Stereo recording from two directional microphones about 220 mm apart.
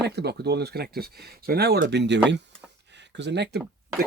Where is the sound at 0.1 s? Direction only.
50° right (ahead or behind).